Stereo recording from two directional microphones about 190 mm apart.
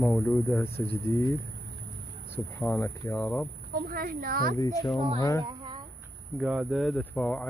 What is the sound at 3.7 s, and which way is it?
Speech, 50° right (ahead or behind).